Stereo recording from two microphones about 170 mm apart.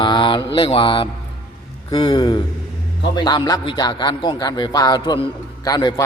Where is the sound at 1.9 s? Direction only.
25° left (ahead or behind).